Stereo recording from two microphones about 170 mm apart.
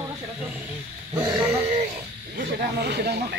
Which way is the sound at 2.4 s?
65° right (ahead or behind).